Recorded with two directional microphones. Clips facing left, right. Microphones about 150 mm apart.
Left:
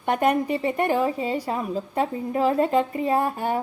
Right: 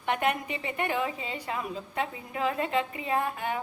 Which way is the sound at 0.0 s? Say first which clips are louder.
Left 7 dB; 40° left (ahead or behind).